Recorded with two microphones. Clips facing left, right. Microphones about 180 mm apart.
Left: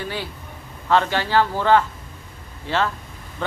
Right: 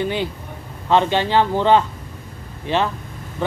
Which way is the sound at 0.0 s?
20° right (ahead or behind).